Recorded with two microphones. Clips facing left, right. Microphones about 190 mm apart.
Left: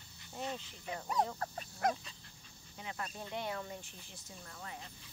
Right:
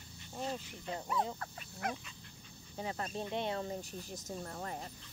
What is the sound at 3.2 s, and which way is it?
Speech, 25° right (ahead or behind).